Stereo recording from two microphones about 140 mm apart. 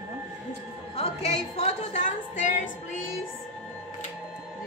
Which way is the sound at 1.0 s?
50° left (ahead or behind).